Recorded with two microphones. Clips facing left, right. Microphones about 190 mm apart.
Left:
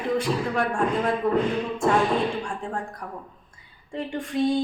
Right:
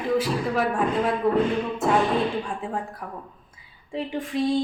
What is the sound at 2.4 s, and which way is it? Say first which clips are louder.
Speech: right 1 dB; 5° right (ahead or behind).